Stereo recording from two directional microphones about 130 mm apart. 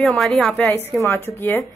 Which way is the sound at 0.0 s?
5° left (ahead or behind).